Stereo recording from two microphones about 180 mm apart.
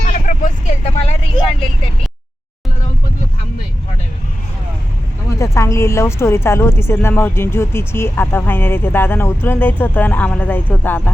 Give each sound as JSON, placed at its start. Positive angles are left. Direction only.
{"t": 0.1, "sound": "vehicle", "side_deg": 45}
{"t": 5.4, "sound": "speech", "side_deg": 15}